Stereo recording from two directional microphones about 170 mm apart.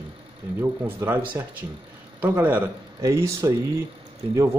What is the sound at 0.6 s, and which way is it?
Speech, 15° right (ahead or behind).